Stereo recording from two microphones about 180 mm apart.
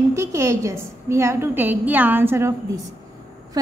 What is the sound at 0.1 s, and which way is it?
A woman's voice, 15° right (ahead or behind).